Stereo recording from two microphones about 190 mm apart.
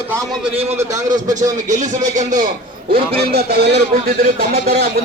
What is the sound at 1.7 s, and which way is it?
Speech, 40° right (ahead or behind).